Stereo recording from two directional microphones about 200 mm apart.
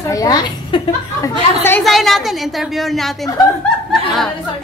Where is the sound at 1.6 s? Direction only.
5° left (ahead or behind).